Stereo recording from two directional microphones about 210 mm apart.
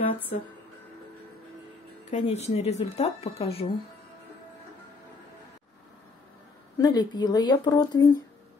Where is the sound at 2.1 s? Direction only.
30° left (ahead or behind).